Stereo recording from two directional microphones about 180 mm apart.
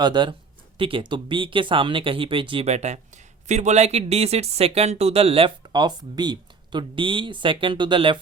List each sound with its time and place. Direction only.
0.0 s speech: 25° right (ahead or behind)